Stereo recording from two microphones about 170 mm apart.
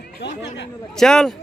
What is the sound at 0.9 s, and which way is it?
Speech, 5° left (ahead or behind).